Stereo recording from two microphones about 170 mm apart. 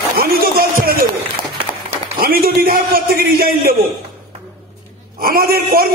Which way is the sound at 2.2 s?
60° right (ahead or behind).